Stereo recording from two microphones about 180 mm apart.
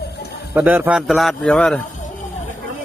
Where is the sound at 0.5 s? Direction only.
10° right (ahead or behind).